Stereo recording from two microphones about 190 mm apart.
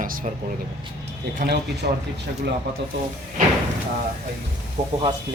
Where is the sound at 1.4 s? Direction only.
60° right (ahead or behind).